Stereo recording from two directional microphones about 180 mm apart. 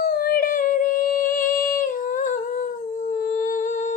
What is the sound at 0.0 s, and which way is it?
Music, 60° left (ahead or behind).